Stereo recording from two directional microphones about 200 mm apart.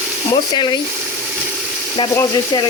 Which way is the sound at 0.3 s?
20° left (ahead or behind).